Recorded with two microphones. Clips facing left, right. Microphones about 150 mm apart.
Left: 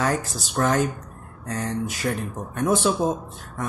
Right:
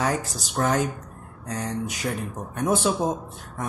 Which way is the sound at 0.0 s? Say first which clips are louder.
Left 1 dB; 15° right (ahead or behind).